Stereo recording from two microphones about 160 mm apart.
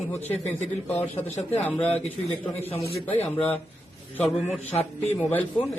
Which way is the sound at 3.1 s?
40° left (ahead or behind).